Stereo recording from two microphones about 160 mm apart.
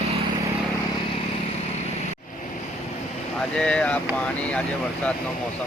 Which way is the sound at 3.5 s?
5° left (ahead or behind).